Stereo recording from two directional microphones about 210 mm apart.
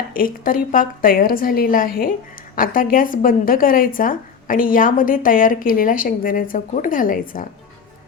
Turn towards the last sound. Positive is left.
turn(degrees=40)  # may be behind; listen again after turning